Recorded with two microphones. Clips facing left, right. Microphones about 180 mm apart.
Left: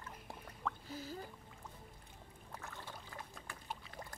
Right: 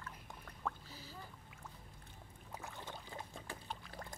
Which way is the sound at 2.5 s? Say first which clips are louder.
Right 2 dB; 15° right (ahead or behind).